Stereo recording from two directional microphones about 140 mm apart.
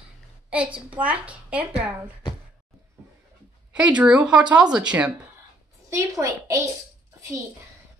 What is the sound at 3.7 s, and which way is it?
Speech, 10° right (ahead or behind).